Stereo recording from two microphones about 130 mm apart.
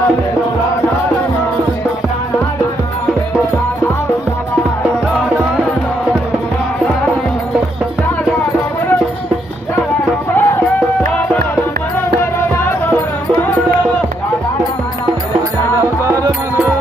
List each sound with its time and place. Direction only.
10.3 s music: 20° left (ahead or behind)
15.8 s music: 25° right (ahead or behind)